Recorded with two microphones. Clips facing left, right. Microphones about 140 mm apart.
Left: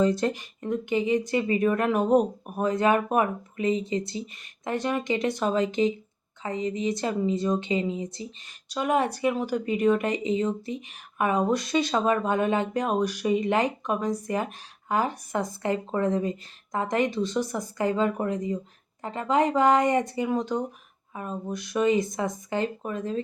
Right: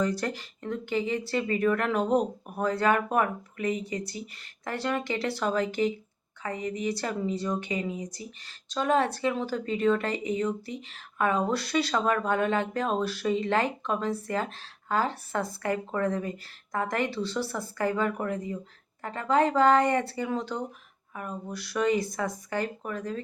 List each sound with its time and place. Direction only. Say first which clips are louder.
0.0 s a woman's voice: left 5 dB; 25° left (ahead or behind)